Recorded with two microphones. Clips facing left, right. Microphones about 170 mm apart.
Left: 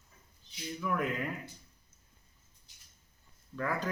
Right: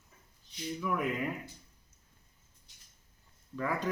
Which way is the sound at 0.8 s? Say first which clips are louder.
Even; 5° right (ahead or behind).